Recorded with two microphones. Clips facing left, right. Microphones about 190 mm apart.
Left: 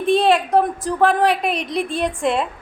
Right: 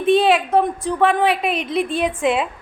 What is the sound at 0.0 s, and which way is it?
A woman's voice, centre (ahead or behind).